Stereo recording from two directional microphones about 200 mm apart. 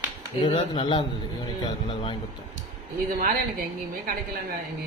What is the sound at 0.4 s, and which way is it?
Speech, 25° left (ahead or behind).